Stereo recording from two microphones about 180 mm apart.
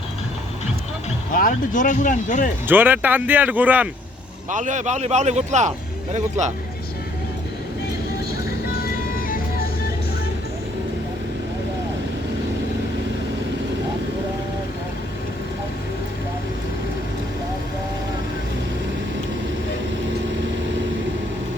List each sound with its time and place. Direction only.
1.3 s speech: 50° left (ahead or behind)
2.6 s speech: 10° right (ahead or behind)
4.5 s a man's voice: 45° right (ahead or behind)
8.4 s music: 55° left (ahead or behind)